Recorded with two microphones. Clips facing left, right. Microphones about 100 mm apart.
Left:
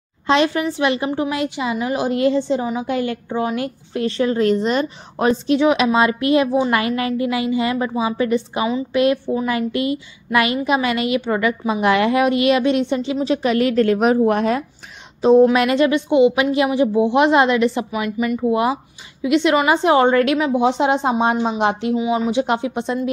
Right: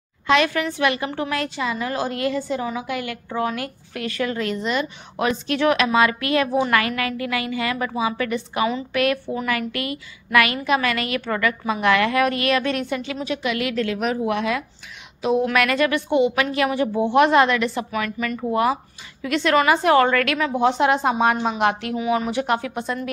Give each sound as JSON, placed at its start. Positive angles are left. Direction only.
{"t": 0.3, "sound": "a woman's voice", "side_deg": 25}
{"t": 5.6, "sound": "a woman's voice", "side_deg": 15}
{"t": 15.4, "sound": "a woman's voice", "side_deg": 25}